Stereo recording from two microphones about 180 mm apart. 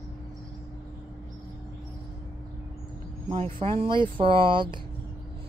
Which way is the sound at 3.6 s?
35° right (ahead or behind).